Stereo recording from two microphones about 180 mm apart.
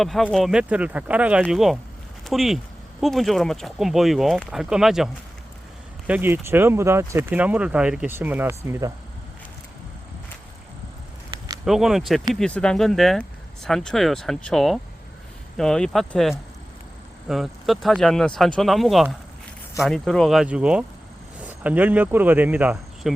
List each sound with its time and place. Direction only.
0.0 s speech: centre (ahead or behind)
6.1 s speech: 10° right (ahead or behind)
11.3 s a sound: 20° right (ahead or behind)
11.6 s speech: centre (ahead or behind)